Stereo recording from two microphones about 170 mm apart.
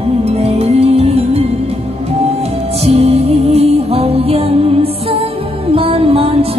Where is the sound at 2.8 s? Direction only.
35° right (ahead or behind).